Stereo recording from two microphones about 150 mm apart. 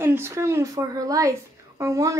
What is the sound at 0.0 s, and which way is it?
Speech, 15° right (ahead or behind).